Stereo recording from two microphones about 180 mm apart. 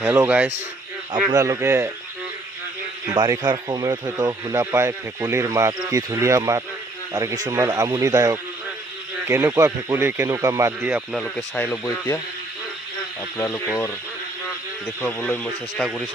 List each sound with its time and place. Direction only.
0.0 s speech: 15° right (ahead or behind)
3.2 s speech: 25° right (ahead or behind)
11.2 s speech: 5° left (ahead or behind)
13.3 s speech: 10° left (ahead or behind)